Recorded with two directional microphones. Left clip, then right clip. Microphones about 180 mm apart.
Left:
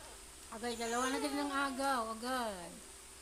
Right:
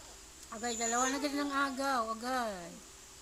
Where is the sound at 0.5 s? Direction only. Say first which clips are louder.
Right 3 dB; 15° right (ahead or behind).